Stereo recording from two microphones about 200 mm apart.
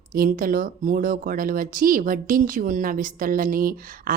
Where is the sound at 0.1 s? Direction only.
45° right (ahead or behind).